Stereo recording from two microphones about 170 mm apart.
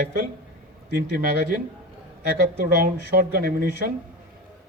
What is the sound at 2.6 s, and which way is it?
A man's voice, 65° right (ahead or behind).